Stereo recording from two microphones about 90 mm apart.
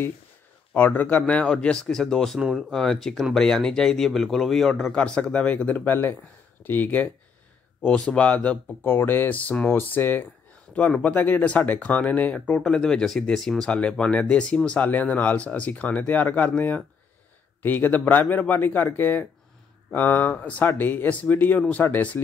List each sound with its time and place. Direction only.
0.7 s a man's voice: 20° left (ahead or behind); by 4.9 s centre (ahead or behind)
4.9 s speech: 10° left (ahead or behind)
10.7 s speech: 10° left (ahead or behind)